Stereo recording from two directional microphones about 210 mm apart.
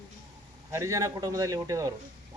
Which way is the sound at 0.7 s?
15° right (ahead or behind).